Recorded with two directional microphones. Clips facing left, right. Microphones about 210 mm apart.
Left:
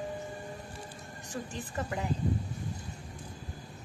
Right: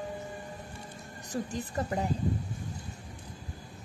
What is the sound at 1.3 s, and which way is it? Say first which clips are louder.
Speech: right 5 dB; 40° right (ahead or behind).